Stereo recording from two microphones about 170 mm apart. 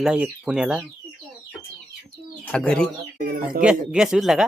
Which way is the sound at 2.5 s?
5° left (ahead or behind).